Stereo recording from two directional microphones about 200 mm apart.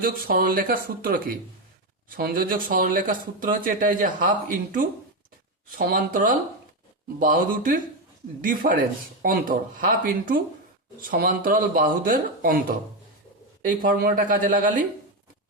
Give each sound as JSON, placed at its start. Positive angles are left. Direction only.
{"t": 0.0, "sound": "a man's voice", "side_deg": -45}